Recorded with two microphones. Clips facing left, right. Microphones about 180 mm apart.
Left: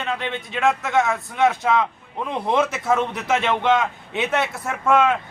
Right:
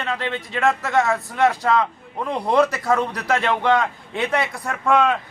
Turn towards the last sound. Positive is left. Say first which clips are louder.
# even
turn(degrees=0)  # may be behind; listen again after turning